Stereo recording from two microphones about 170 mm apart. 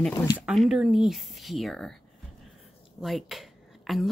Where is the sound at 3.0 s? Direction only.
Centre (ahead or behind).